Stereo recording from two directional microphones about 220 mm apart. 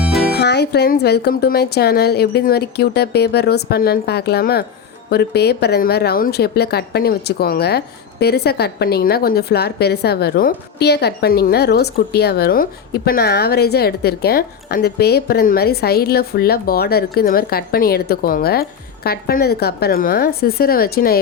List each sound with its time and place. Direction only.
0.0 s music: centre (ahead or behind)
0.3 s speech: 50° left (ahead or behind)